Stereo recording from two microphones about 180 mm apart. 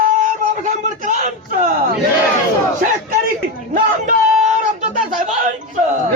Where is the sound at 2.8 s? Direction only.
50° right (ahead or behind).